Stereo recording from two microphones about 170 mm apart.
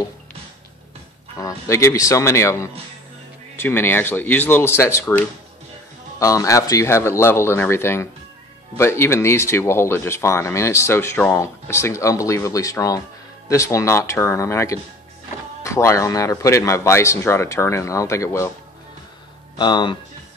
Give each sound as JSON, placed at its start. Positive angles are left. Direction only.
{"t": 1.4, "sound": "speech", "side_deg": 15}
{"t": 19.6, "sound": "speech", "side_deg": 25}